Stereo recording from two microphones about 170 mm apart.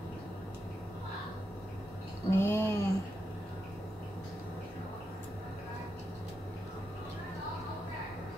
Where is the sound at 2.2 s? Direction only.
15° left (ahead or behind).